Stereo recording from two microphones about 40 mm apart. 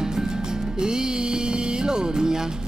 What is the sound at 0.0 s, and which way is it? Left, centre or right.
Music, centre.